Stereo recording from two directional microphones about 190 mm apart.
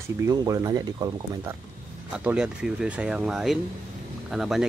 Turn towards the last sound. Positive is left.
turn(degrees=0)  # may be behind; listen again after turning